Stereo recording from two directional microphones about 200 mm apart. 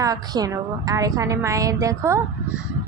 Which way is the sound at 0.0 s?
15° right (ahead or behind).